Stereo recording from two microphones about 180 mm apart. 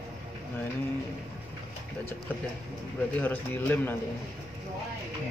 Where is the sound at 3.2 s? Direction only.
10° left (ahead or behind).